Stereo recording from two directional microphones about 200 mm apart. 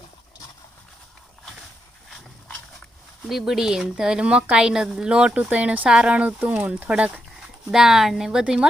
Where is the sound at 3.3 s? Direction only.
Centre (ahead or behind).